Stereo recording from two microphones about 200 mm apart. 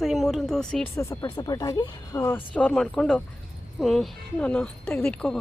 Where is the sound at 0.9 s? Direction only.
15° left (ahead or behind).